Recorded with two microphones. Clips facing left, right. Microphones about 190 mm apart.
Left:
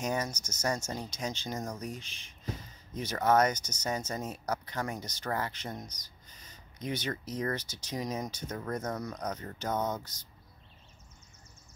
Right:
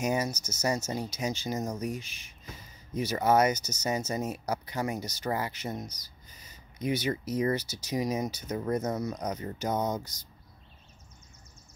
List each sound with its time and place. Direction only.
0.0 s speech: 10° right (ahead or behind)